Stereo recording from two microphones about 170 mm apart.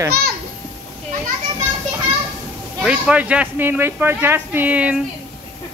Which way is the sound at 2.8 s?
5° right (ahead or behind).